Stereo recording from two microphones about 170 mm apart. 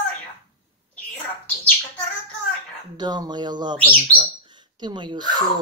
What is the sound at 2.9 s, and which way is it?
Speech, 25° right (ahead or behind).